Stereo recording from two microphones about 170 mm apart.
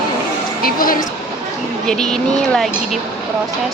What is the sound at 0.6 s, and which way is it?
Speech, 55° left (ahead or behind).